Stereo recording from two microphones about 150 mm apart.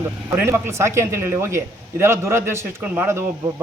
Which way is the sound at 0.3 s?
15° right (ahead or behind).